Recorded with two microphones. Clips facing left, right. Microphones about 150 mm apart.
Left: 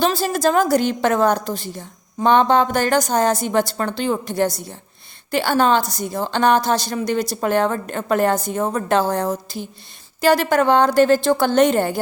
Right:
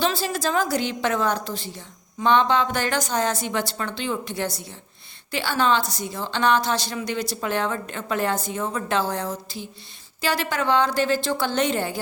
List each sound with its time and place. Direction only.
0.0 s a woman's voice: 45° left (ahead or behind)